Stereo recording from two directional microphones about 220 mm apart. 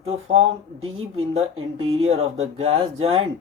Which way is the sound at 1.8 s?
30° right (ahead or behind).